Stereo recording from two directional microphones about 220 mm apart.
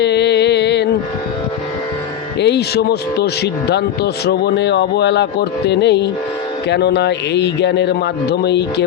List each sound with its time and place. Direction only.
0.0 s mantra: 50° left (ahead or behind)
2.4 s speech: 50° left (ahead or behind)